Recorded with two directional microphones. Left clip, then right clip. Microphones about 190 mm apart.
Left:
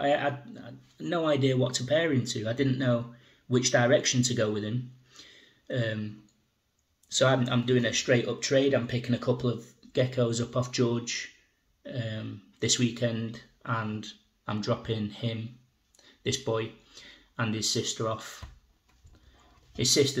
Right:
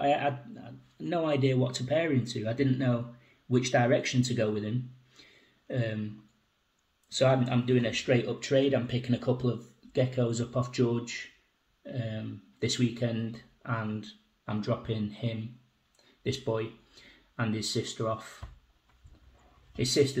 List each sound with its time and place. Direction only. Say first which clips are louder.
0.0 s a sound: left 1 dB; 15° left (ahead or behind)
1.7 s speech: left 2 dB; 15° left (ahead or behind)
7.1 s speech: left 1 dB; 15° left (ahead or behind)